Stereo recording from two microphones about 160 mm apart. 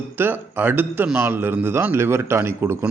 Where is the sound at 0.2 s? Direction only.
10° right (ahead or behind).